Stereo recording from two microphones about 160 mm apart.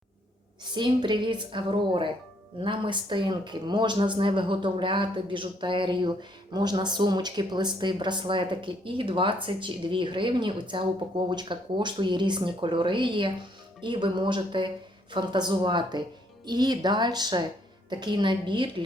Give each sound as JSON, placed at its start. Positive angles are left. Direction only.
{"t": 0.6, "sound": "speech", "side_deg": -30}